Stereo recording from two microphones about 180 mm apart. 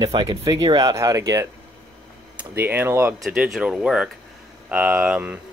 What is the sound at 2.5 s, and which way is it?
Speech, 10° right (ahead or behind).